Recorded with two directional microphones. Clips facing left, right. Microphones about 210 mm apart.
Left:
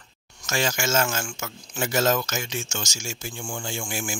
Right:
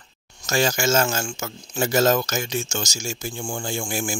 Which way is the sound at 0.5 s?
35° right (ahead or behind).